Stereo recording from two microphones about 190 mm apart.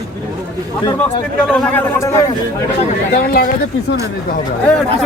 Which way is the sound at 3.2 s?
55° left (ahead or behind).